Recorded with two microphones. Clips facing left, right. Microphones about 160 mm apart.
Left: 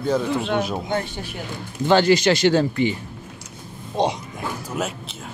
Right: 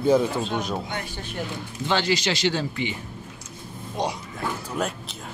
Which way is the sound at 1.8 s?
50° left (ahead or behind).